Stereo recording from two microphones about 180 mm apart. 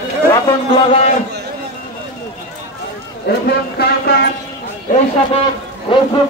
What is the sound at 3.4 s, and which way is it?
Music, 65° left (ahead or behind).